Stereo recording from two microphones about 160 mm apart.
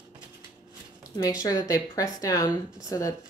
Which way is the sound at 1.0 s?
20° left (ahead or behind).